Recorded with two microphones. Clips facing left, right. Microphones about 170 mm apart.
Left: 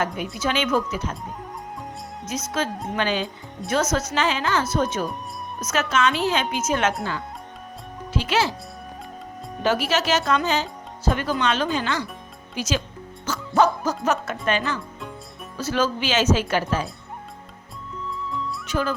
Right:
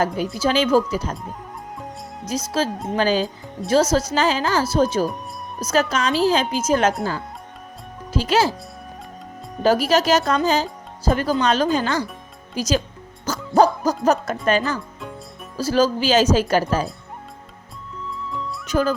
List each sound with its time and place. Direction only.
0.3 s speech: 35° right (ahead or behind)
2.3 s speech: 35° right (ahead or behind)
8.1 s speech: 40° right (ahead or behind)
9.6 s speech: 40° right (ahead or behind)
13.2 s music: 40° right (ahead or behind)
13.8 s speech: 40° right (ahead or behind)
18.1 s music: centre (ahead or behind)
18.7 s speech: 40° right (ahead or behind)